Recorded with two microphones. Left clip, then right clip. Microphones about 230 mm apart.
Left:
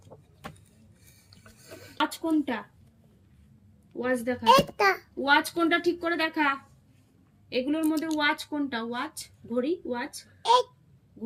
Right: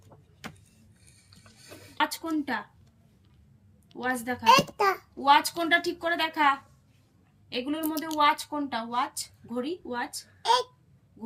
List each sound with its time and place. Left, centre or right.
2.0 s speech: right
3.9 s speech: right
4.4 s a child's voice: centre
5.2 s speech: right